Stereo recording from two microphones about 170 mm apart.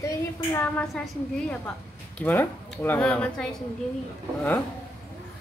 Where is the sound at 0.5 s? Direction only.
10° left (ahead or behind).